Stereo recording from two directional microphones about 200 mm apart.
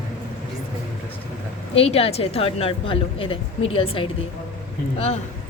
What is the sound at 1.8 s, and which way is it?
A woman's voice, 30° left (ahead or behind).